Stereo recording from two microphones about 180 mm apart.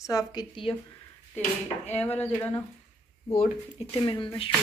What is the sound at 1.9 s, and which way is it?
Speech, 10° left (ahead or behind).